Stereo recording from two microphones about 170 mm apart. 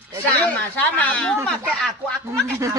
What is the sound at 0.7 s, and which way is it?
Speech, 10° left (ahead or behind).